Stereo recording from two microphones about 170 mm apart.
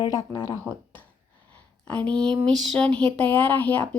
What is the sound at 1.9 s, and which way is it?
Speech, 5° left (ahead or behind).